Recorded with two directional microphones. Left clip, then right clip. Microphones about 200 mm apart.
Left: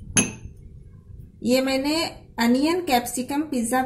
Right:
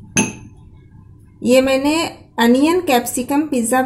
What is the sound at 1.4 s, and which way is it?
A woman's voice, 15° right (ahead or behind).